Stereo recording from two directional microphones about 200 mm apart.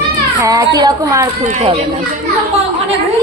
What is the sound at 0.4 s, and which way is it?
Speech, 15° right (ahead or behind).